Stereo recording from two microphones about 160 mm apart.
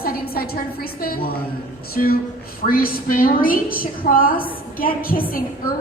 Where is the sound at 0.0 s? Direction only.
70° left (ahead or behind).